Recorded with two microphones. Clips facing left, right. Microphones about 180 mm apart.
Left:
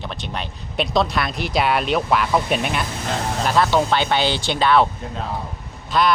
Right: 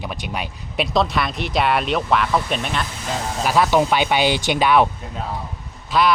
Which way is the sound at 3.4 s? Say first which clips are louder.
Right 2 dB; 10° right (ahead or behind).